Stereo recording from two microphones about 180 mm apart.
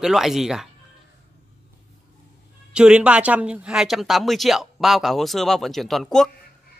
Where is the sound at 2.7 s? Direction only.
5° right (ahead or behind).